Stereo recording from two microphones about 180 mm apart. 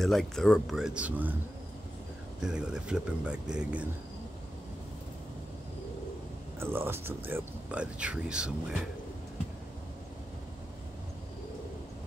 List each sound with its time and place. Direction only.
0.0 s speech: centre (ahead or behind)
2.4 s speech: 5° right (ahead or behind)
6.6 s speech: 10° right (ahead or behind)